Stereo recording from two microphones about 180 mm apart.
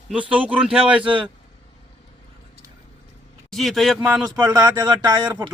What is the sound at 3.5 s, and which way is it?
Speech, centre (ahead or behind).